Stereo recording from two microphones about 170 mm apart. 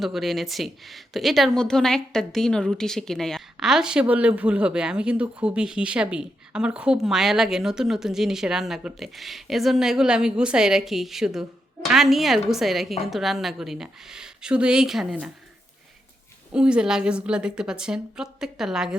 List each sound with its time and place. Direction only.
0.0 s a woman's voice: centre (ahead or behind)
16.5 s a woman's voice: 5° right (ahead or behind)